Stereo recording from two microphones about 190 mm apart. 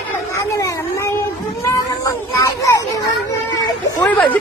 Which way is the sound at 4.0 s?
10° left (ahead or behind).